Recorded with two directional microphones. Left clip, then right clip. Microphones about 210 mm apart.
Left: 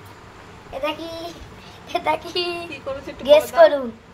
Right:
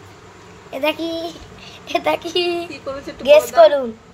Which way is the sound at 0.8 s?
40° right (ahead or behind).